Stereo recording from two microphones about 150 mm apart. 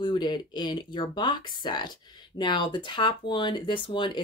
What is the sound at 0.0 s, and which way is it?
Speech, 30° left (ahead or behind).